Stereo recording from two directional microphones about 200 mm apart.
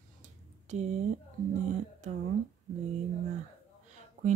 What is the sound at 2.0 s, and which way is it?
Speech, 35° right (ahead or behind).